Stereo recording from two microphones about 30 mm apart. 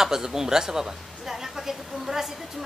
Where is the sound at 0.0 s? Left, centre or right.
Centre.